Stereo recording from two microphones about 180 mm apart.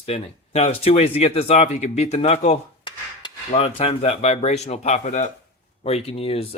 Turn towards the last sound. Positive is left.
turn(degrees=35)  # may be behind; listen again after turning